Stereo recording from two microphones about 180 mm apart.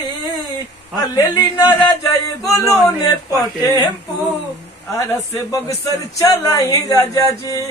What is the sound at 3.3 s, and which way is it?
Speech, 25° left (ahead or behind).